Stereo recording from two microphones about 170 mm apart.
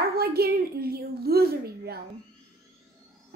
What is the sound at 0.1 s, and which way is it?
A woman's voice, 65° right (ahead or behind).